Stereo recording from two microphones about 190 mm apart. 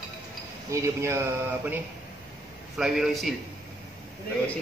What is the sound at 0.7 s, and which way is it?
Speech, 15° right (ahead or behind).